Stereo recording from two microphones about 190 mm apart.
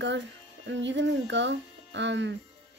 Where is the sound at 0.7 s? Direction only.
70° right (ahead or behind).